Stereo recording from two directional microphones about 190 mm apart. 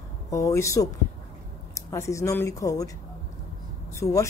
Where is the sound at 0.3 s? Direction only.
15° left (ahead or behind).